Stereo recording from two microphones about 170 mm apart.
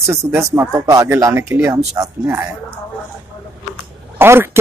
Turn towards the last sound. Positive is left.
turn(degrees=-15)  # may be behind; listen again after turning